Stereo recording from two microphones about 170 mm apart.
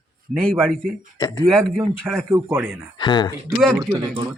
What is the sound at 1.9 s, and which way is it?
Speech, centre (ahead or behind).